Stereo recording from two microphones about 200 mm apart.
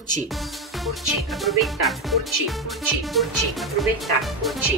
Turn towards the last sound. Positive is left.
turn(degrees=0)  # may be behind; listen again after turning